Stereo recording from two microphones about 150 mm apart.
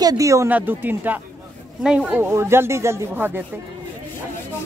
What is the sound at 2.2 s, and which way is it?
Speech, 15° right (ahead or behind).